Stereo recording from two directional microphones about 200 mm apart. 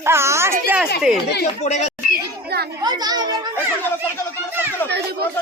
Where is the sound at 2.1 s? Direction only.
50° right (ahead or behind).